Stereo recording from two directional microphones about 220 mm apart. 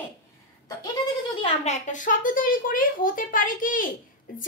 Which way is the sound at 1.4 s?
30° left (ahead or behind).